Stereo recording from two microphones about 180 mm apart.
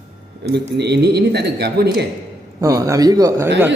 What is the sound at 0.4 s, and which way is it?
Speech, 65° right (ahead or behind).